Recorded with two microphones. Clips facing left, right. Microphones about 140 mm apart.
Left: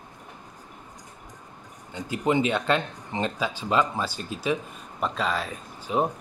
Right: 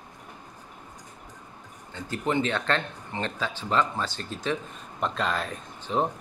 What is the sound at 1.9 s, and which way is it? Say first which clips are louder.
Speech: left 3 dB; 15° left (ahead or behind).